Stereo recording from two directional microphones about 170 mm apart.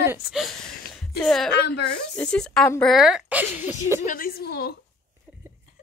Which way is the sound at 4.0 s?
50° left (ahead or behind).